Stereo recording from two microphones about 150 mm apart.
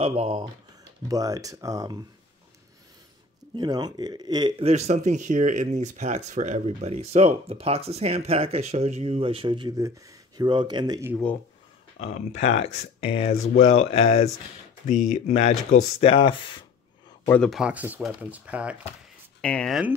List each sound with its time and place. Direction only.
0.0 s speech: 40° right (ahead or behind)
1.0 s a man's voice: 25° right (ahead or behind)
3.5 s a man's voice: 30° right (ahead or behind)
4.6 s speech: 50° right (ahead or behind); by 11.1 s 30° right (ahead or behind)
12.0 s speech: 50° left (ahead or behind)
13.3 s speech: 65° left (ahead or behind)
13.8 s speech: 45° left (ahead or behind)
14.9 s speech: 55° left (ahead or behind)
16.0 s speech: 35° left (ahead or behind)
17.3 s speech: 5° left (ahead or behind)
19.4 s speech: 5° left (ahead or behind)